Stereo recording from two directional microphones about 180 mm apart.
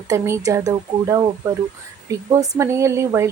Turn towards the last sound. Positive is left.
turn(degrees=-15)  # may be behind; listen again after turning